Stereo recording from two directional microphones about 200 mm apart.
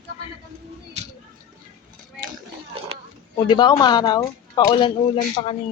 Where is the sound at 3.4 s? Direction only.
20° left (ahead or behind).